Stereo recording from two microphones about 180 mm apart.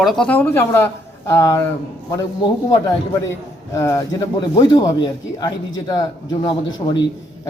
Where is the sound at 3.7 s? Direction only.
15° left (ahead or behind).